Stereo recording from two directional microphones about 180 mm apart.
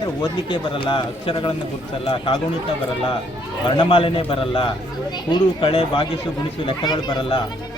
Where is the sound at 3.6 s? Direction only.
25° left (ahead or behind).